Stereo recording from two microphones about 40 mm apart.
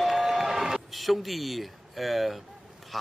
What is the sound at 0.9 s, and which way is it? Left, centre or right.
Speech, centre.